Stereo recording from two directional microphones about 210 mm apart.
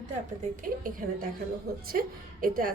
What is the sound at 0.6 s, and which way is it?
A woman's voice, 40° right (ahead or behind).